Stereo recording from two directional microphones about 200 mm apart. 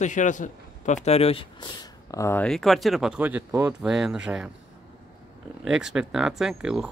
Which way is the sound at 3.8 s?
5° right (ahead or behind).